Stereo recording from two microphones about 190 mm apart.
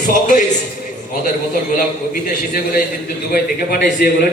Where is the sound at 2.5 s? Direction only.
50° left (ahead or behind).